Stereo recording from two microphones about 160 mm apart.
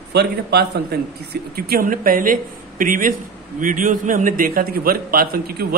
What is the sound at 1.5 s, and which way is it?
A man's voice, 75° right (ahead or behind).